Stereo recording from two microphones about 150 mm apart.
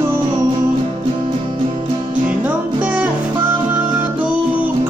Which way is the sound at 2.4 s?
10° right (ahead or behind).